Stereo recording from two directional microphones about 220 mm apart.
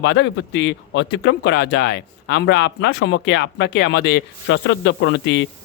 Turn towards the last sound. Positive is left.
turn(degrees=55)  # may be behind; listen again after turning